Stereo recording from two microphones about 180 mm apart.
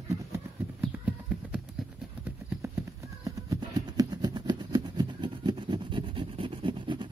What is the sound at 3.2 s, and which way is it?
Vehicle, 20° right (ahead or behind).